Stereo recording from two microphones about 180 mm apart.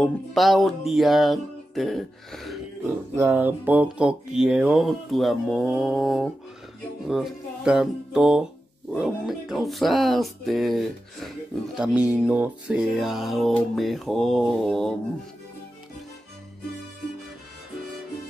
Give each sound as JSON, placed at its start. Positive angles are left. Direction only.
{"t": 0.0, "sound": "speech", "side_deg": 0}
{"t": 3.2, "sound": "speech", "side_deg": -15}